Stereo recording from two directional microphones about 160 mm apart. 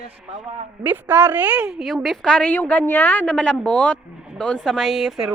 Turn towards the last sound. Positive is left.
turn(degrees=0)  # may be behind; listen again after turning